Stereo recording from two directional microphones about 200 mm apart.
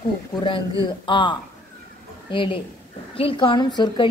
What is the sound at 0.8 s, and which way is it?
A woman's voice, 25° left (ahead or behind).